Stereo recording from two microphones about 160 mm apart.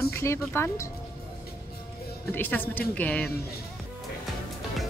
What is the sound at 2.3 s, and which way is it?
Speech, 10° left (ahead or behind).